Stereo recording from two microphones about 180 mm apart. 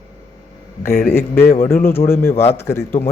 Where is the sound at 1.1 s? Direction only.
15° left (ahead or behind).